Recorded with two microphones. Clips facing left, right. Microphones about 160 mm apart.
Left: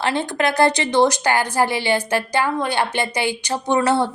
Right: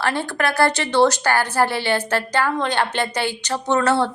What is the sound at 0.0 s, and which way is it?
A woman's voice, 20° left (ahead or behind).